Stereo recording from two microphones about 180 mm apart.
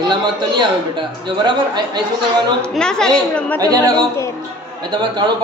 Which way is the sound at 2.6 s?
5° left (ahead or behind).